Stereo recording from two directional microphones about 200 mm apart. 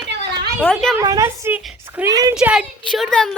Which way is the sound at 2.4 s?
5° right (ahead or behind).